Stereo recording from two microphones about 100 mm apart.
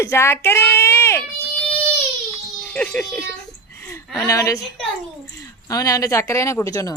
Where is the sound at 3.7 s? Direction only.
25° left (ahead or behind).